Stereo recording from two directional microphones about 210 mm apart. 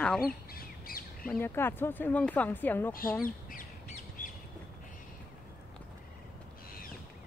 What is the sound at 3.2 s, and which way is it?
Bird, 40° left (ahead or behind).